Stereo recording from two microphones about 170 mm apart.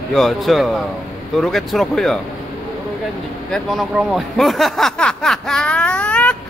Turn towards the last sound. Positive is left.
turn(degrees=5)  # may be behind; listen again after turning